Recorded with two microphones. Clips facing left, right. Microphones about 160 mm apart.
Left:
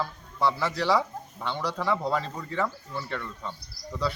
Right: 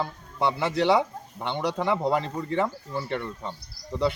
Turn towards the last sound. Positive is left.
turn(degrees=-20)  # may be behind; listen again after turning